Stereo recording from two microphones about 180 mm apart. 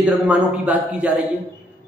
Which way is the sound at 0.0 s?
5° right (ahead or behind).